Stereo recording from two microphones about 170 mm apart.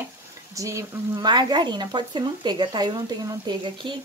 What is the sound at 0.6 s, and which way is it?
Speech, 20° right (ahead or behind).